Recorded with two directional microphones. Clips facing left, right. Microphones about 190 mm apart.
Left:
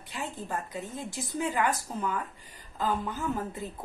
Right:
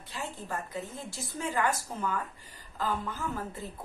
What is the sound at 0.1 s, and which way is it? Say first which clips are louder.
Speech: left 2 dB; 15° left (ahead or behind).